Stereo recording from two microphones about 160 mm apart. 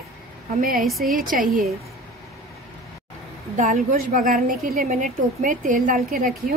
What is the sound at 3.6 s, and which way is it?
A woman's voice, 55° right (ahead or behind).